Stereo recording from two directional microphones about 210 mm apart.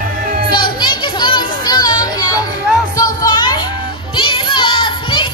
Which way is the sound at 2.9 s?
15° left (ahead or behind).